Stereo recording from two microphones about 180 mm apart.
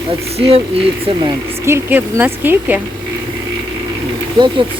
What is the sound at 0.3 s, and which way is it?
Speech, 35° right (ahead or behind).